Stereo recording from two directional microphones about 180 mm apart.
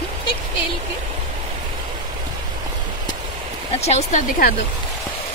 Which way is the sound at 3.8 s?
40° left (ahead or behind).